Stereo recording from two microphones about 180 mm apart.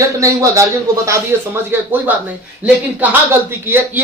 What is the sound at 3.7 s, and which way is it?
Speech, 10° right (ahead or behind).